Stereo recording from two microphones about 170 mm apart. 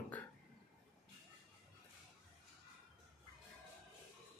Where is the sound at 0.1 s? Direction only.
10° left (ahead or behind).